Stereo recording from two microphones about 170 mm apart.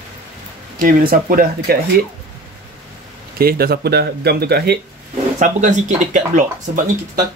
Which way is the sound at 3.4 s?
65° right (ahead or behind).